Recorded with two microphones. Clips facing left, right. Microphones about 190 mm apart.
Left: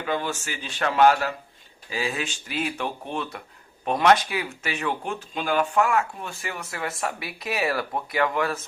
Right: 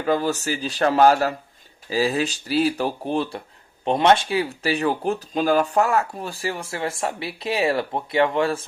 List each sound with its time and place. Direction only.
0.0 s speech: 40° right (ahead or behind)